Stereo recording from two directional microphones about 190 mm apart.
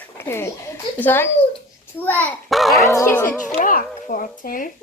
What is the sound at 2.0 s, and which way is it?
Speech, 10° left (ahead or behind).